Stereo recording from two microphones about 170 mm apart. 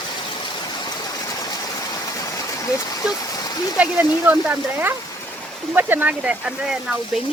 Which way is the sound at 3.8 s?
10° right (ahead or behind).